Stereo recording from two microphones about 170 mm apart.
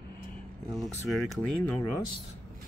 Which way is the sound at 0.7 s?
Centre (ahead or behind).